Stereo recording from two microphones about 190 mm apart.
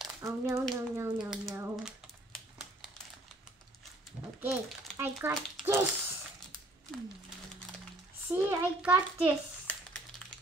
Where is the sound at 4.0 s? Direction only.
5° right (ahead or behind).